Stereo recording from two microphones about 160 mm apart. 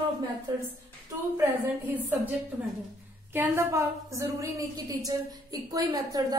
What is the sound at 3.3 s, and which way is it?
A woman's voice, 15° right (ahead or behind).